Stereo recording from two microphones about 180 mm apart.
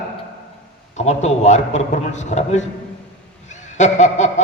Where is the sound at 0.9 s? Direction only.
40° left (ahead or behind).